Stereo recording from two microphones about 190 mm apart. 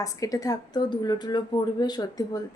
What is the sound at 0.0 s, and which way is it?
A woman's voice, 20° left (ahead or behind).